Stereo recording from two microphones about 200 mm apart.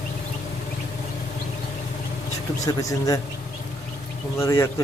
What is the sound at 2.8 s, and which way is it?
Speech, 15° left (ahead or behind).